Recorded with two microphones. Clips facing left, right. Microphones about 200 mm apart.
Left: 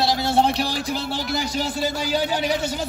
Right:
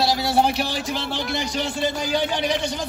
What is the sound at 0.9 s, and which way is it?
Speech, 40° left (ahead or behind).